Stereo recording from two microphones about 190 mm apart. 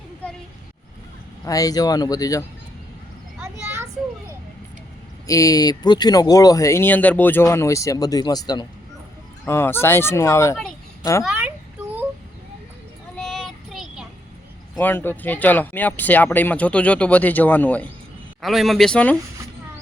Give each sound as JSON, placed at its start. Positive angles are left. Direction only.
{"t": 1.5, "sound": "speech", "side_deg": 20}
{"t": 3.4, "sound": "a sound", "side_deg": -10}
{"t": 5.2, "sound": "speech", "side_deg": 15}
{"t": 9.5, "sound": "speech", "side_deg": 10}
{"t": 11.2, "sound": "speech", "side_deg": -5}
{"t": 13.1, "sound": "child singing", "side_deg": 5}
{"t": 14.8, "sound": "speech", "side_deg": 10}